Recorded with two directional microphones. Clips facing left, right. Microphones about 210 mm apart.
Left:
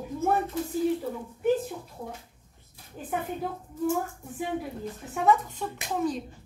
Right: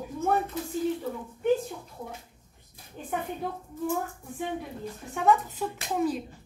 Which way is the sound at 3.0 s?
5° left (ahead or behind).